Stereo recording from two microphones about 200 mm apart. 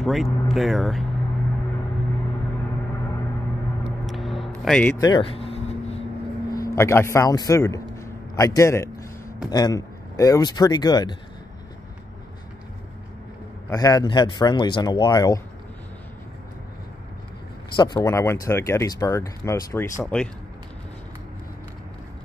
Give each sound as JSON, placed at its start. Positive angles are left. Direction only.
{"t": 0.0, "sound": "speech", "side_deg": 0}
{"t": 3.8, "sound": "vehicle", "side_deg": 0}
{"t": 4.6, "sound": "speech", "side_deg": 5}
{"t": 5.0, "sound": "a sound", "side_deg": 25}
{"t": 6.5, "sound": "a man's voice", "side_deg": 15}
{"t": 13.7, "sound": "speech", "side_deg": 20}
{"t": 17.7, "sound": "speech", "side_deg": 20}